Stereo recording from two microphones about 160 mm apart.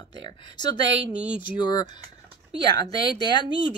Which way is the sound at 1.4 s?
30° left (ahead or behind).